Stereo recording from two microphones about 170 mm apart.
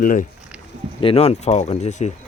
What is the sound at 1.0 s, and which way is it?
Speech, 35° left (ahead or behind).